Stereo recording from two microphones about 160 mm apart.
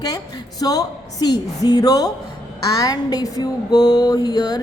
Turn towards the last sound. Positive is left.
turn(degrees=25)  # may be behind; listen again after turning